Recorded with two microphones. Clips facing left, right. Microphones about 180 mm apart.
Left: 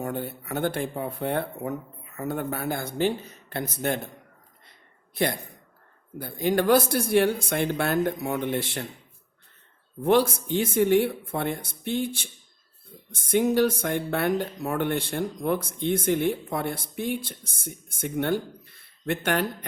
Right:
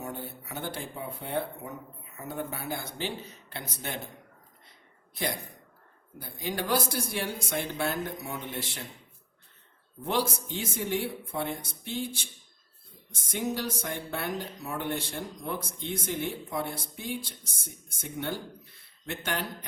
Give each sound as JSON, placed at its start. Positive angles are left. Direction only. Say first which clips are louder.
{"t": 0.0, "sound": "speech", "louder": "left 7 dB", "side_deg": 60}
{"t": 6.1, "sound": "speech", "louder": "left 10 dB", "side_deg": 55}
{"t": 10.0, "sound": "speech", "louder": "left 9 dB", "side_deg": 55}